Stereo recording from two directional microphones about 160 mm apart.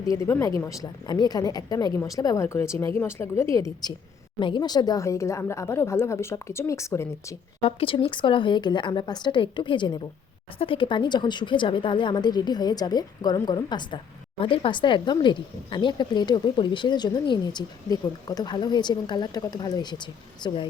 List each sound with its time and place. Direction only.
0.1 s a woman's voice: 15° left (ahead or behind)
7.6 s a woman's voice: 35° left (ahead or behind)